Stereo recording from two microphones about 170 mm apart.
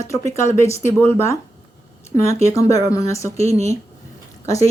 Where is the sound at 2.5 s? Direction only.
20° left (ahead or behind).